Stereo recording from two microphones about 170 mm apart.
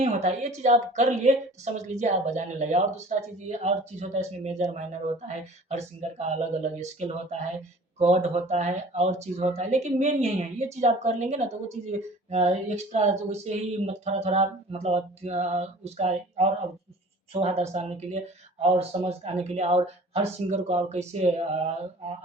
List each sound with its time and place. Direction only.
0.0 s a woman's voice: 40° right (ahead or behind)